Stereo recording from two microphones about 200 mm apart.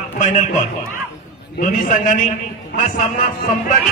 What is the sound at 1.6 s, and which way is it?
Speech, 40° left (ahead or behind).